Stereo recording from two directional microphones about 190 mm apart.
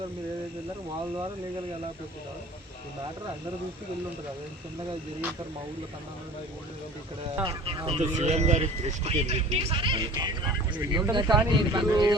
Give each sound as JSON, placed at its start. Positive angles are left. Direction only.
{"t": 7.4, "sound": "speech", "side_deg": -30}